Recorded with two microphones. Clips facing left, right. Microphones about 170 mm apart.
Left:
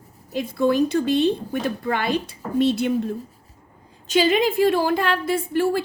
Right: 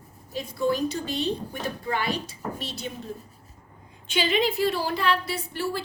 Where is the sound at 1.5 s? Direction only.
65° left (ahead or behind).